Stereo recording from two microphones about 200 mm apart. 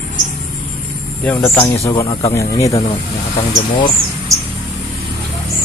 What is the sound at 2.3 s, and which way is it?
Speech, 15° left (ahead or behind).